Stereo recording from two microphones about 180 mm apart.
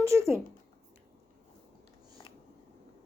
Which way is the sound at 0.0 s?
15° right (ahead or behind).